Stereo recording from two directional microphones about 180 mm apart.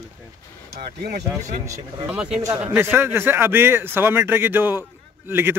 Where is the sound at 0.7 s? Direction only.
55° right (ahead or behind).